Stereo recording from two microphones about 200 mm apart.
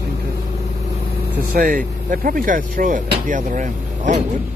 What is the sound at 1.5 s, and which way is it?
Speech, 40° right (ahead or behind).